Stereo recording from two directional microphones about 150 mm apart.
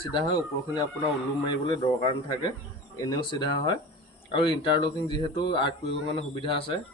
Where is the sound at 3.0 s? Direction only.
30° left (ahead or behind).